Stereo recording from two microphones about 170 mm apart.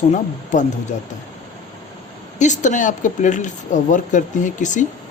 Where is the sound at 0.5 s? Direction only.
45° left (ahead or behind).